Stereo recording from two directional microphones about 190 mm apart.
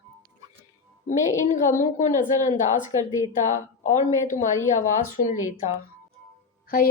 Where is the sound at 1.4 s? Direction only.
40° left (ahead or behind).